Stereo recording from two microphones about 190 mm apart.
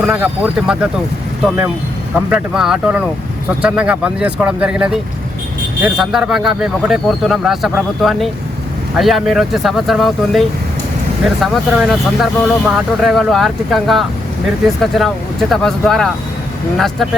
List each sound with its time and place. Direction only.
0.0 s speech: 5° right (ahead or behind)
2.1 s speech: 5° right (ahead or behind)
11.4 s speech: centre (ahead or behind)